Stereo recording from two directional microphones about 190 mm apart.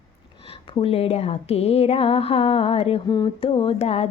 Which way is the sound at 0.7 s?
30° left (ahead or behind).